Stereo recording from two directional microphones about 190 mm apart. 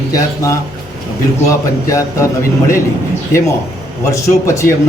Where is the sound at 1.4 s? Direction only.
15° left (ahead or behind).